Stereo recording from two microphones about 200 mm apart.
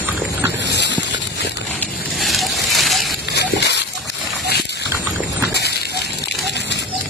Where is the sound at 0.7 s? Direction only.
60° left (ahead or behind).